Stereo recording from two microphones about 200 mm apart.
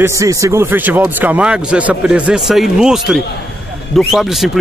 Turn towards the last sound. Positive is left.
turn(degrees=0)  # may be behind; listen again after turning